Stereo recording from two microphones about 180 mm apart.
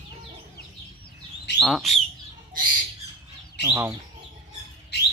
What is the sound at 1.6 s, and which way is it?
Duck, centre (ahead or behind).